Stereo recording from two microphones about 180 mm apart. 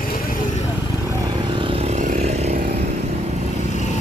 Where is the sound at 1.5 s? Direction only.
30° right (ahead or behind).